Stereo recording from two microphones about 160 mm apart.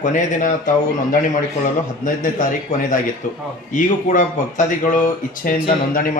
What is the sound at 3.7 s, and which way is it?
A man's voice, 50° left (ahead or behind).